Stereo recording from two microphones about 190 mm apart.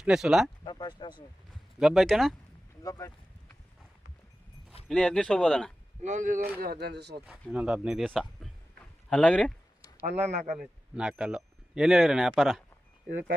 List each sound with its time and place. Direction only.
0.0 s speech: 5° right (ahead or behind)
0.6 s a sound: 25° left (ahead or behind)
1.8 s speech: centre (ahead or behind)
2.8 s speech: 15° left (ahead or behind)
4.9 s speech: 5° left (ahead or behind)
6.0 s speech: 40° right (ahead or behind)
6.6 s speech: 55° right (ahead or behind)
7.5 s speech: 5° right (ahead or behind)
10.1 s speech: 35° right (ahead or behind)
10.5 s speech: 5° right (ahead or behind)